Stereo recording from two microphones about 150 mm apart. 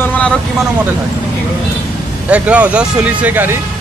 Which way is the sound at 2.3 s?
10° right (ahead or behind).